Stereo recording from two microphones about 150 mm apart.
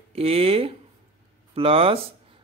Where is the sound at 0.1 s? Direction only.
40° right (ahead or behind).